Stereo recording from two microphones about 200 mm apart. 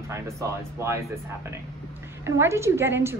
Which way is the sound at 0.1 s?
15° right (ahead or behind).